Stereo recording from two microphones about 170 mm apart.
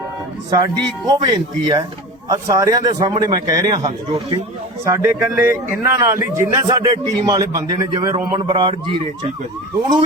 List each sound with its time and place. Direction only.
0.5 s a man's voice: 25° right (ahead or behind)
4.9 s a man's voice: 15° right (ahead or behind); by 9.3 s 30° right (ahead or behind)